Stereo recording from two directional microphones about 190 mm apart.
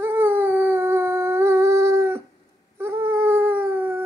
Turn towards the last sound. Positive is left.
turn(degrees=-10)  # may be behind; listen again after turning